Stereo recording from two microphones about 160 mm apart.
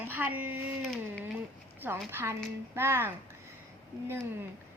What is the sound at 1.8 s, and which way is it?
A woman's voice, 15° right (ahead or behind).